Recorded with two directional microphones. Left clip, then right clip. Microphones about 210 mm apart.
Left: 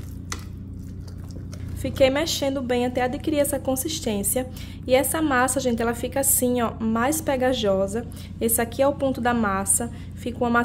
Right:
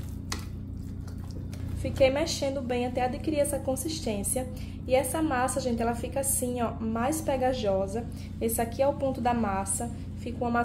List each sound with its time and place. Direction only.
1.8 s a woman's voice: 40° left (ahead or behind)